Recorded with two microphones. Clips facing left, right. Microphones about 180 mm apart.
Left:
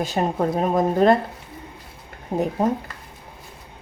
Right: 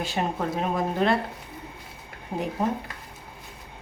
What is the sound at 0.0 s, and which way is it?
Speech, 40° left (ahead or behind).